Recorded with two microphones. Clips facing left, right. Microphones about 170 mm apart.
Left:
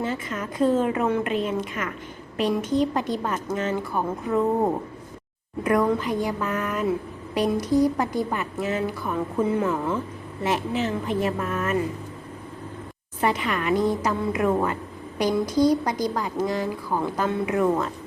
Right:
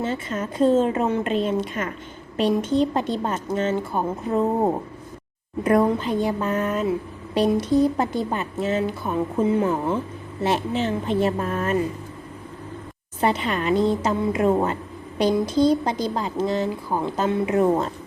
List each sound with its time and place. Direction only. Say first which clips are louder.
0.0 s a woman's voice: right 2 dB; 30° right (ahead or behind)
13.2 s a woman's voice: right 2 dB; 30° right (ahead or behind)